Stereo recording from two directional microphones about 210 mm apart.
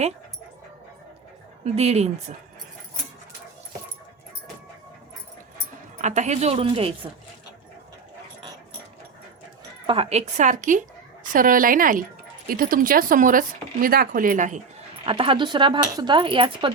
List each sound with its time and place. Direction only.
1.6 s speech: 30° right (ahead or behind)
6.0 s speech: 35° right (ahead or behind)
9.8 s speech: 25° right (ahead or behind)
15.0 s speech: 25° right (ahead or behind)